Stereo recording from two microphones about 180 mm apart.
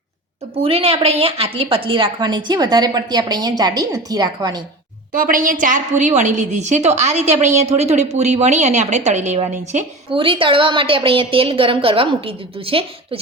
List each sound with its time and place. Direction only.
0.5 s a woman's voice: 35° right (ahead or behind)
5.1 s a woman's voice: 50° right (ahead or behind); by 13.1 s 30° right (ahead or behind)